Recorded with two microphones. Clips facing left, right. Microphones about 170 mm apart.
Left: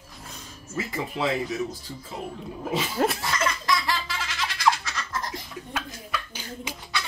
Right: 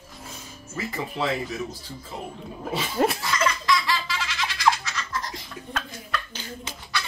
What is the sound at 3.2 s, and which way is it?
Laughter, 45° left (ahead or behind).